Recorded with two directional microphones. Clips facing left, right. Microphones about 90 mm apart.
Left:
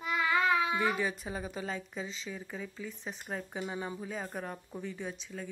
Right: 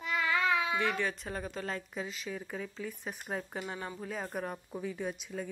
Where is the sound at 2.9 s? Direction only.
10° right (ahead or behind).